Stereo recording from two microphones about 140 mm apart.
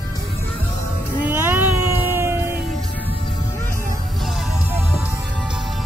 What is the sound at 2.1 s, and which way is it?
Music, 20° right (ahead or behind).